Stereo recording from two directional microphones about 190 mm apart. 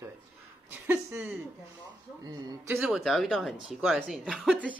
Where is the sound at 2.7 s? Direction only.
Centre (ahead or behind).